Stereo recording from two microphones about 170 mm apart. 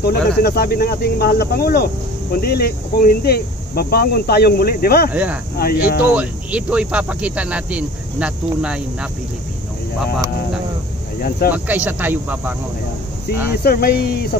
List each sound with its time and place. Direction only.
0.0 s speech: 65° left (ahead or behind)
5.1 s speech: 10° right (ahead or behind)
5.6 s speech: 60° left (ahead or behind)
6.1 s speech: 5° right (ahead or behind)
11.1 s speech: 60° left (ahead or behind)
11.5 s speech: 10° right (ahead or behind)
13.7 s speech: 65° left (ahead or behind)